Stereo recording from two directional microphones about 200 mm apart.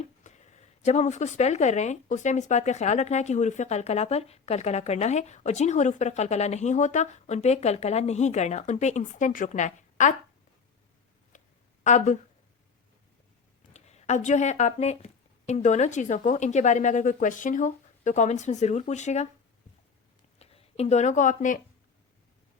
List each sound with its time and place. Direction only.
0.0 s speech: 35° left (ahead or behind)
11.8 s speech: 35° left (ahead or behind)
13.7 s speech: 35° left (ahead or behind)
20.4 s speech: 30° left (ahead or behind)